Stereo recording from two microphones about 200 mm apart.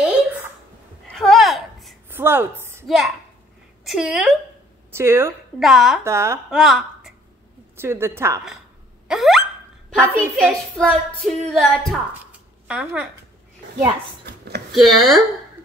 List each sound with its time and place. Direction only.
1.1 s a sound: centre (ahead or behind)
2.0 s a sound: 10° right (ahead or behind)
3.8 s a woman's voice: centre (ahead or behind)
4.9 s a woman's voice: 10° right (ahead or behind)
5.6 s a woman's voice: centre (ahead or behind)
6.0 s a woman's voice: 15° right (ahead or behind)
6.5 s a woman's voice: centre (ahead or behind)
9.0 s a sound: centre (ahead or behind)
9.9 s a woman's voice: 10° right (ahead or behind)
10.8 s a woman's voice: 5° left (ahead or behind)
13.7 s speech: 55° right (ahead or behind)
14.7 s a woman's voice: centre (ahead or behind)